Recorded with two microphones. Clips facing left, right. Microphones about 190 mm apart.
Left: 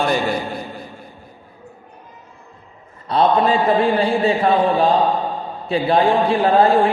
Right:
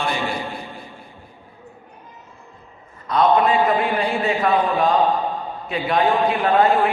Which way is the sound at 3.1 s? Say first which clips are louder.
Left 1 dB; 30° left (ahead or behind).